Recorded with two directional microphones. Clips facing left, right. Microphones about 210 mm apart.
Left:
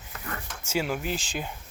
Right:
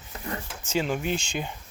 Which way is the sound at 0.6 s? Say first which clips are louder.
Right 2 dB; 10° left (ahead or behind).